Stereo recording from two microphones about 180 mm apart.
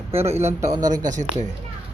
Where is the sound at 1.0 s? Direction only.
45° right (ahead or behind).